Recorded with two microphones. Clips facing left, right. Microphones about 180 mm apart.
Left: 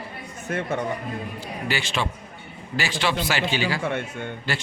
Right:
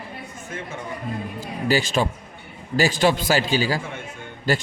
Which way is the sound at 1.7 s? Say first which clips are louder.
Right 7 dB; 40° right (ahead or behind).